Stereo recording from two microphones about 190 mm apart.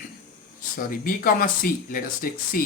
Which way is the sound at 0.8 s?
50° left (ahead or behind).